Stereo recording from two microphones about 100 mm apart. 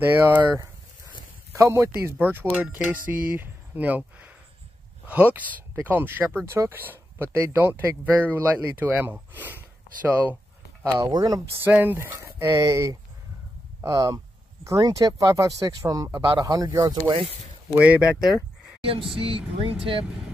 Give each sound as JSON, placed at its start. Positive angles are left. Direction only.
{"t": 0.0, "sound": "speech", "side_deg": -20}
{"t": 10.8, "sound": "speech", "side_deg": -35}
{"t": 11.6, "sound": "speech", "side_deg": -20}
{"t": 13.7, "sound": "a sound", "side_deg": -35}
{"t": 14.8, "sound": "speech", "side_deg": -40}
{"t": 17.7, "sound": "speech", "side_deg": -15}
{"t": 19.1, "sound": "speech", "side_deg": -65}